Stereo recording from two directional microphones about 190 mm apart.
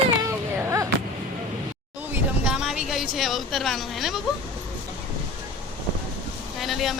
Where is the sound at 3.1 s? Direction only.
Centre (ahead or behind).